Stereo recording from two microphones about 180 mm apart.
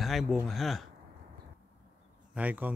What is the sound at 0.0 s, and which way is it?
Speech, centre (ahead or behind).